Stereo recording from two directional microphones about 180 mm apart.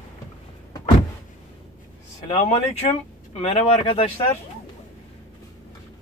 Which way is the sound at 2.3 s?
35° left (ahead or behind).